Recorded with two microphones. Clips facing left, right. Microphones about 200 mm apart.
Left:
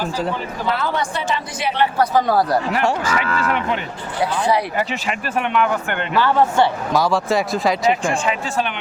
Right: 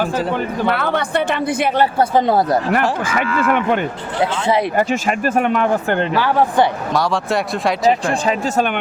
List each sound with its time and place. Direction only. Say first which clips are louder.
0.6 s speech: right 1 dB; 60° right (ahead or behind)
2.0 s speech: even; 25° right (ahead or behind)
3.0 s speech: right 2 dB; 50° right (ahead or behind)
4.2 s speech: right 2 dB; 25° right (ahead or behind)
4.8 s speech: right 6 dB; 45° right (ahead or behind)
6.1 s speech: left 2 dB; 15° right (ahead or behind)
6.9 s speech: left 1 dB; centre (ahead or behind)
7.9 s speech: right 3 dB; 35° right (ahead or behind)